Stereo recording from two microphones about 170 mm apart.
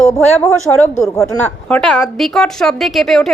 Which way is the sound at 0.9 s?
20° left (ahead or behind).